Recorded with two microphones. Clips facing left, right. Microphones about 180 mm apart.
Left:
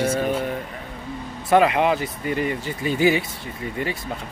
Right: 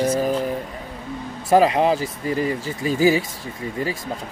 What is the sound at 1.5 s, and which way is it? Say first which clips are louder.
Speech: right 1 dB; 35° right (ahead or behind).